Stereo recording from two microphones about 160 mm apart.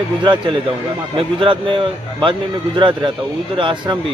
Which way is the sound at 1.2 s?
35° right (ahead or behind).